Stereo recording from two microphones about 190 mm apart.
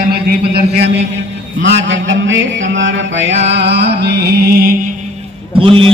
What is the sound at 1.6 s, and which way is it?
Mantra, 75° right (ahead or behind).